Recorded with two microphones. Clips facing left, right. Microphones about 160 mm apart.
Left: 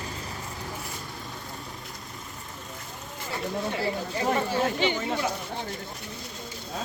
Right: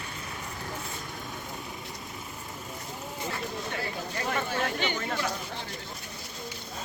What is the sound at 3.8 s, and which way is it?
Chatter, 30° left (ahead or behind).